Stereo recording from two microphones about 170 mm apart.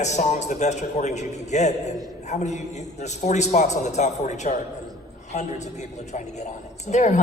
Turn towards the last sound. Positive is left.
turn(degrees=45)  # may be behind; listen again after turning